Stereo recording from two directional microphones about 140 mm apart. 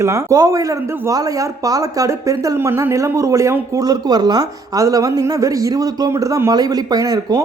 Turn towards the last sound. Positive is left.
turn(degrees=-25)  # may be behind; listen again after turning